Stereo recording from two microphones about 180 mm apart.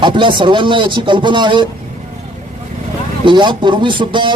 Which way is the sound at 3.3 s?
25° right (ahead or behind).